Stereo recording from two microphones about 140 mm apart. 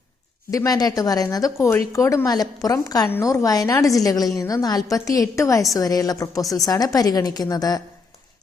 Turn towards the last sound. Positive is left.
turn(degrees=25)  # may be behind; listen again after turning